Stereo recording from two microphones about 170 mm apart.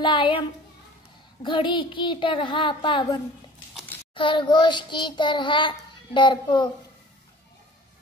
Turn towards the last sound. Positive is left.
turn(degrees=25)  # may be behind; listen again after turning